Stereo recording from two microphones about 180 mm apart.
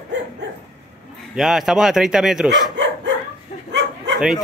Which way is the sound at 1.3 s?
Centre (ahead or behind).